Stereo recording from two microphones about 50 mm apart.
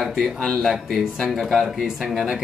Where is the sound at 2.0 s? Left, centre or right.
Centre.